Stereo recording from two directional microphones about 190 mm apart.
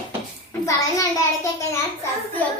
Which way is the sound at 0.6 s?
15° left (ahead or behind).